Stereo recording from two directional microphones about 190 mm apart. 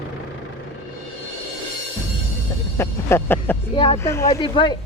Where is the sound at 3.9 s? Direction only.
15° left (ahead or behind).